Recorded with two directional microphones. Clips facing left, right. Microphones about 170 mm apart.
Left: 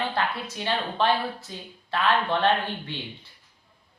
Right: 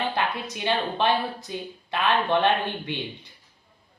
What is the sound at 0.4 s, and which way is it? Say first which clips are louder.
Speech: right 2 dB; 15° right (ahead or behind).